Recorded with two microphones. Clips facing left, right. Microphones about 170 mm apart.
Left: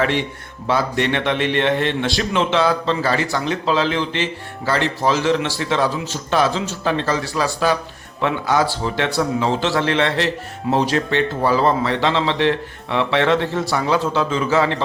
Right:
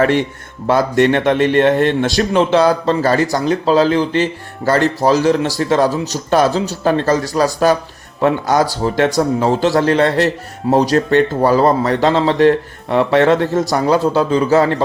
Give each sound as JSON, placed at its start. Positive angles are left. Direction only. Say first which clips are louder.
{"t": 0.0, "sound": "a man's voice", "louder": "right 6 dB", "side_deg": -45}